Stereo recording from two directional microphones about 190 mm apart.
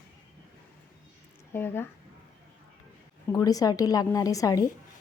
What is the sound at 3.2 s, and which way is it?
A woman's voice, 20° left (ahead or behind).